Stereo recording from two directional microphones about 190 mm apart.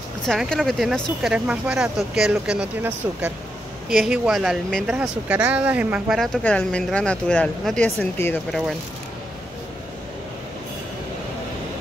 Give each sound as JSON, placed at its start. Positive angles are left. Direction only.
{"t": 0.3, "sound": "speech", "side_deg": 0}